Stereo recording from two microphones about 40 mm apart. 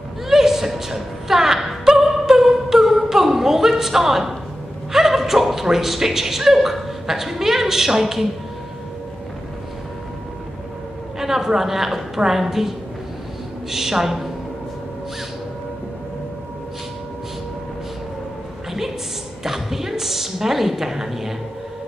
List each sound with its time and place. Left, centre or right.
0.3 s a sound: centre
4.9 s speech: centre
11.1 s speech: centre
19.4 s a woman's voice: centre